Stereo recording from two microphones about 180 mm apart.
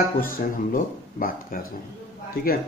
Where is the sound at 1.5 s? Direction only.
50° left (ahead or behind).